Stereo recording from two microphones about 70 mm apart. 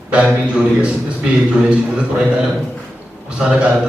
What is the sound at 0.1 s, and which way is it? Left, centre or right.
A man's voice, centre.